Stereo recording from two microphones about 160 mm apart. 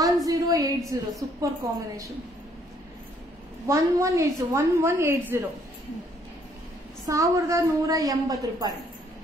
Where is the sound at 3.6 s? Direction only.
20° right (ahead or behind).